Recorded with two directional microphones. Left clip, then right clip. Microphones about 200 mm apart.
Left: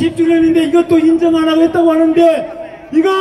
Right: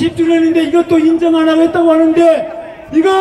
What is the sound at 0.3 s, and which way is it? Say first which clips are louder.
A man's voice: even; 20° left (ahead or behind).